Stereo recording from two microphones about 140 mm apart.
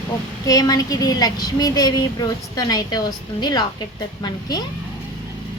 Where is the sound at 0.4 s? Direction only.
25° left (ahead or behind).